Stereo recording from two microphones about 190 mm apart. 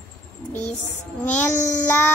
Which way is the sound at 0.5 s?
10° left (ahead or behind).